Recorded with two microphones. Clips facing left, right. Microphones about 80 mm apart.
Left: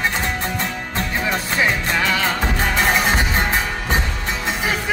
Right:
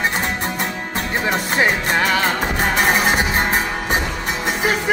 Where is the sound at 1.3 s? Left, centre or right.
Right.